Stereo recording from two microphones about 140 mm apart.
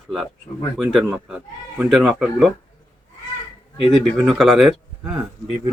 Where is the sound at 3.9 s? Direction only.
5° right (ahead or behind).